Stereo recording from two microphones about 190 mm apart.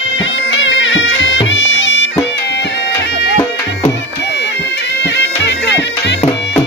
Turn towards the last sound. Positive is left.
turn(degrees=65)  # may be behind; listen again after turning